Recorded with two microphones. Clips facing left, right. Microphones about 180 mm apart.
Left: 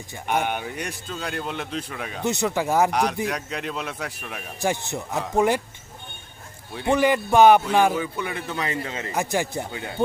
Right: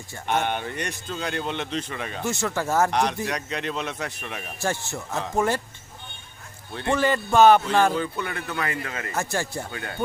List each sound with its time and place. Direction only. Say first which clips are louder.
0.1 s speech: even; 10° left (ahead or behind)
2.2 s a man's voice: left 4 dB; 20° left (ahead or behind)
4.6 s a man's voice: left 3 dB; 15° left (ahead or behind)
6.7 s a man's voice: left 3 dB; 15° left (ahead or behind)